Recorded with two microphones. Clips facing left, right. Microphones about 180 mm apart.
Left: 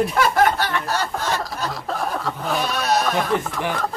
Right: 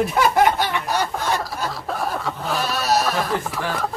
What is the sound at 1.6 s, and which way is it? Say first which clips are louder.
Goat: even; 5° right (ahead or behind).